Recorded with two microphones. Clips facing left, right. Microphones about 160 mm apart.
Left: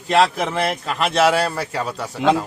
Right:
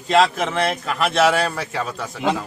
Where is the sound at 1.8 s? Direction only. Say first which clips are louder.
Left 6 dB; 10° left (ahead or behind).